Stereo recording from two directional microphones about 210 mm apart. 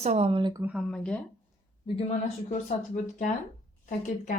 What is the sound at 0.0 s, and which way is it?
Speech, 30° right (ahead or behind).